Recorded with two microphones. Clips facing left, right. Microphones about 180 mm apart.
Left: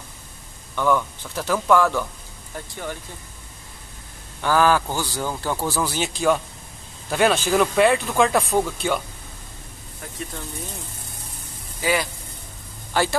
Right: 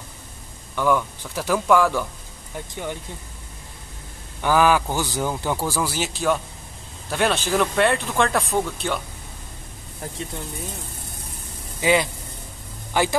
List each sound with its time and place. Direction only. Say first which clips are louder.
0.7 s a man's voice: even; 10° right (ahead or behind)
4.4 s a man's voice: right 1 dB; 15° right (ahead or behind); by 9.0 s centre (ahead or behind)
11.8 s a man's voice: right 3 dB; 20° right (ahead or behind)